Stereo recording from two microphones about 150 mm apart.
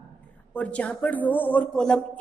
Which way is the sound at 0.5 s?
10° left (ahead or behind).